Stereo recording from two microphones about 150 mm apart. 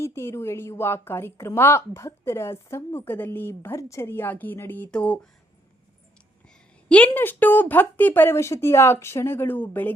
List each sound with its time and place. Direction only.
0.0 s a woman's voice: 15° left (ahead or behind)
6.5 s a woman's voice: 10° left (ahead or behind)